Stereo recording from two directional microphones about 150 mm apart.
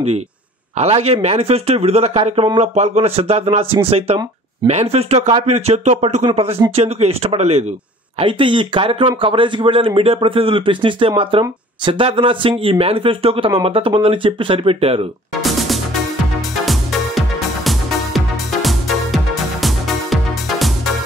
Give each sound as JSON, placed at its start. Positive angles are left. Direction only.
{"t": 0.7, "sound": "speech", "side_deg": -45}
{"t": 8.2, "sound": "speech", "side_deg": -35}
{"t": 15.4, "sound": "music", "side_deg": 0}
{"t": 17.6, "sound": "music", "side_deg": 0}